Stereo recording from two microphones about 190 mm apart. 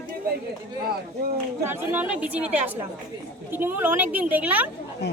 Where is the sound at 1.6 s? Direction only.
10° right (ahead or behind).